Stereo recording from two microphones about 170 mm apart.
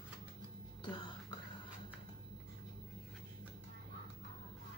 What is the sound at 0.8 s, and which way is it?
Music, 25° left (ahead or behind).